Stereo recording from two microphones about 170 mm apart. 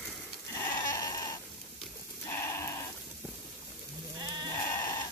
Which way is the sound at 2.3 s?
15° left (ahead or behind).